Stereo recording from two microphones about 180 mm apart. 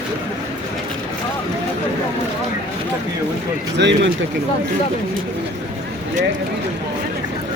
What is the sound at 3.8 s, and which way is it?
Speech, 85° right.